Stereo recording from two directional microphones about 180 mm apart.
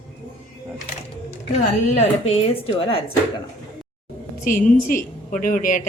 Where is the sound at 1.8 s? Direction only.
35° left (ahead or behind).